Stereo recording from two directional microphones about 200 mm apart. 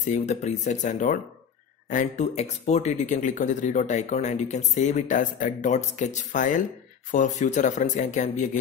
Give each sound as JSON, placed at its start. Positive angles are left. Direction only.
{"t": 0.0, "sound": "speech", "side_deg": 35}